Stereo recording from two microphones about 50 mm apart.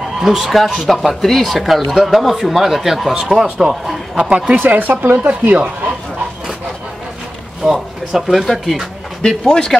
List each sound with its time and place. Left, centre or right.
0.2 s speech: centre
4.2 s speech: centre
4.6 s a woman's voice: right
5.3 s speech: right
7.6 s speech: centre
9.2 s a man's voice: centre